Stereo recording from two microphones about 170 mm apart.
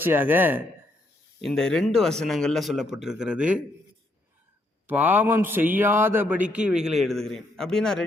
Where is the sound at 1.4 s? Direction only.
5° left (ahead or behind).